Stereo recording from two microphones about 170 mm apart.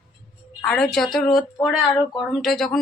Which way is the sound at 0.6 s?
5° left (ahead or behind).